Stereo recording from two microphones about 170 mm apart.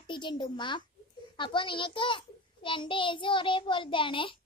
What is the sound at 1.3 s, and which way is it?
A child's voice, 30° left (ahead or behind).